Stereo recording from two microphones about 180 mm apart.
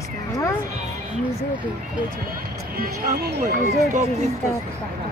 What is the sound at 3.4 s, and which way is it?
Speech, 45° right (ahead or behind).